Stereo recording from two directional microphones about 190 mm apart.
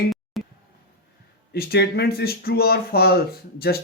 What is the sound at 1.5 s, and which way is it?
Speech, 55° left (ahead or behind).